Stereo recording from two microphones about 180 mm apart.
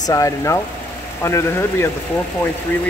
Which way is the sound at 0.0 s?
20° left (ahead or behind).